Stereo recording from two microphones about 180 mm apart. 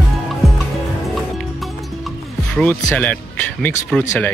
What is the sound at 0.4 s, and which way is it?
Fowl, centre (ahead or behind).